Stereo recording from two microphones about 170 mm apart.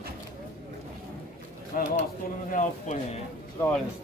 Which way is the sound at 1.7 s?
50° left (ahead or behind).